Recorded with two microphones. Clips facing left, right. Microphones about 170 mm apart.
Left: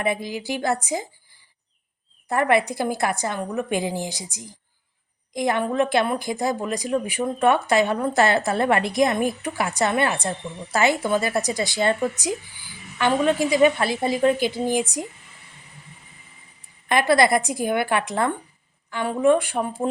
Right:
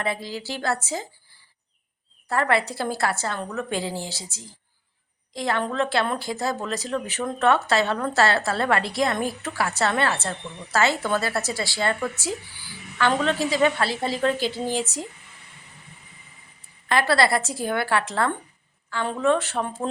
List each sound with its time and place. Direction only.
0.0 s a woman's voice: 15° left (ahead or behind)
2.2 s a woman's voice: 15° left (ahead or behind)
16.9 s a woman's voice: 15° left (ahead or behind)